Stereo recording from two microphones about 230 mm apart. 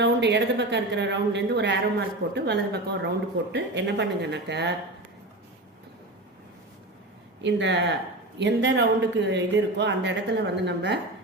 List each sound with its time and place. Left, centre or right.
0.0 s speech: right
7.4 s speech: right